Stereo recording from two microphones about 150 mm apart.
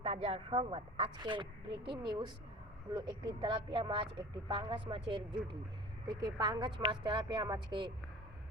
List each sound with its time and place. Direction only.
0.0 s a woman's voice: 40° right (ahead or behind)